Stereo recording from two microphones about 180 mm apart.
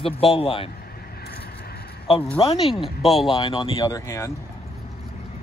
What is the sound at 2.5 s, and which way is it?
Speech, 30° left (ahead or behind).